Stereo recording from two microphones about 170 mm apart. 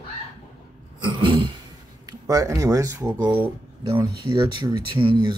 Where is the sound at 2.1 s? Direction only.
20° right (ahead or behind).